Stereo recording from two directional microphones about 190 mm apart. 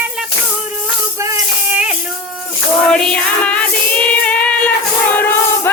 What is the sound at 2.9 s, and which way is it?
Music, 5° left (ahead or behind).